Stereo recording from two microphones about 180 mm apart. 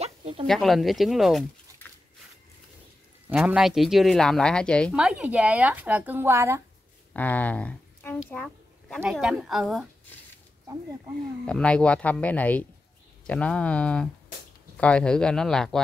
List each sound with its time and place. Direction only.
0.0 s a sound: 35° right (ahead or behind)
0.5 s a woman's voice: centre (ahead or behind)
3.3 s a woman's voice: 5° right (ahead or behind)
4.9 s speech: 5° right (ahead or behind)
7.2 s speech: 10° left (ahead or behind)
8.3 s a sound: 5° left (ahead or behind)
9.1 s a woman's voice: 5° right (ahead or behind)
11.4 s a woman's voice: 5° left (ahead or behind)